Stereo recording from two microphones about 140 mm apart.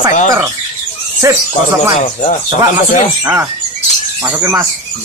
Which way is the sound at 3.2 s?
20° right (ahead or behind).